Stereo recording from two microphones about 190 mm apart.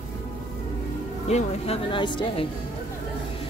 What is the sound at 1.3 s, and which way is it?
Music, 35° left (ahead or behind).